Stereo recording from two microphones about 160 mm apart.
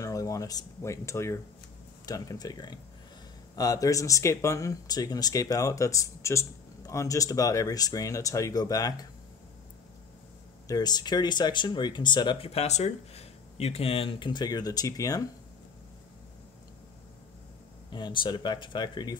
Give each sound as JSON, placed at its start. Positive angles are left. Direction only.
{"t": 0.0, "sound": "speech", "side_deg": 20}
{"t": 10.7, "sound": "speech", "side_deg": 25}
{"t": 17.8, "sound": "speech", "side_deg": 30}